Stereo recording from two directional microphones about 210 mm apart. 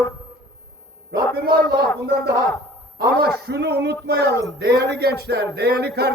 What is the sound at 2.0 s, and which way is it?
A man's voice, 50° right (ahead or behind).